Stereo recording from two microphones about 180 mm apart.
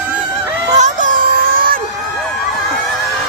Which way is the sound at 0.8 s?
45° right (ahead or behind).